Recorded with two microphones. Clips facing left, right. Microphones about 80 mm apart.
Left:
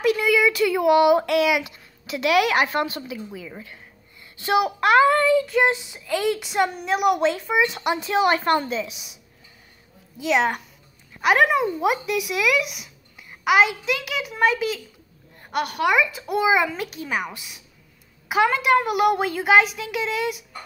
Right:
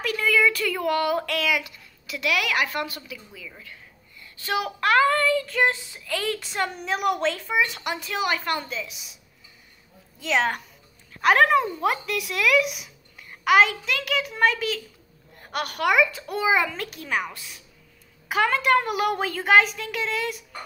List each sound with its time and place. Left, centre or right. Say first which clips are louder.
0.0 s speech: left 3 dB; centre
10.1 s speech: left 3 dB; centre